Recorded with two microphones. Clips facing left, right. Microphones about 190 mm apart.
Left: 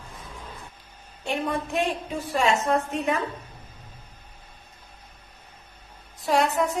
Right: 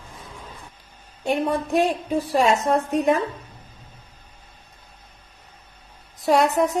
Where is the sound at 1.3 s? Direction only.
40° right (ahead or behind).